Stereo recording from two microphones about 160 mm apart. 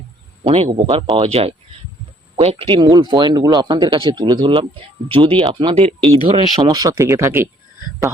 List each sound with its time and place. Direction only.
0.4 s a man's voice: 35° right (ahead or behind); by 7.4 s 15° right (ahead or behind)